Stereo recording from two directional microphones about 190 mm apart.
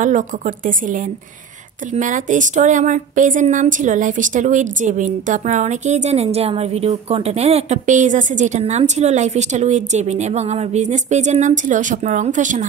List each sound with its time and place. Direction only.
0.0 s a woman's voice: 45° right (ahead or behind)